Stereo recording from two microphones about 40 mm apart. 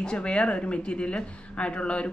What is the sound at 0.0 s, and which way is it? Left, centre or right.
Speech, left.